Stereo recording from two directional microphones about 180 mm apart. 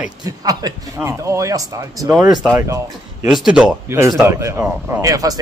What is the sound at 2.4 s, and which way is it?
Speech, 5° right (ahead or behind).